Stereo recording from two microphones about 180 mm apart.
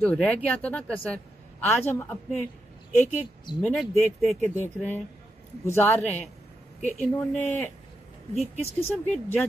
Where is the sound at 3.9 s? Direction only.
10° left (ahead or behind).